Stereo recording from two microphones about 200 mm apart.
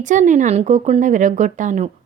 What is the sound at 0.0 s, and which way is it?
Speech, 40° right (ahead or behind).